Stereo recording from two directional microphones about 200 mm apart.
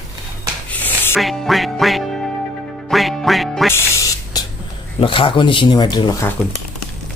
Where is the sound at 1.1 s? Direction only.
Centre (ahead or behind).